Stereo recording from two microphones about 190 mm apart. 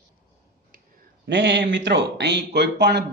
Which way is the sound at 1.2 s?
70° right (ahead or behind).